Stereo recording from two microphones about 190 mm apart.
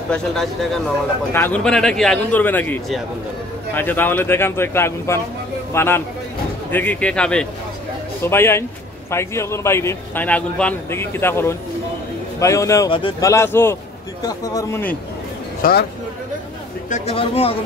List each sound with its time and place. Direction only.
0.1 s a man's voice: centre (ahead or behind)
15.6 s speech: 50° left (ahead or behind)
16.9 s speech: 30° left (ahead or behind)